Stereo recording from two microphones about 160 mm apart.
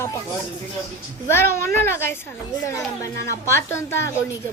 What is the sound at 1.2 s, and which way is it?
A woman's voice, 15° left (ahead or behind).